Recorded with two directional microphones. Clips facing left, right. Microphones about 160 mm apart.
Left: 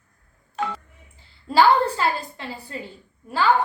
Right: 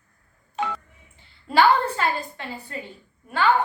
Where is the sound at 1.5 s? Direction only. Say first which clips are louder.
Left 1 dB; 30° left (ahead or behind).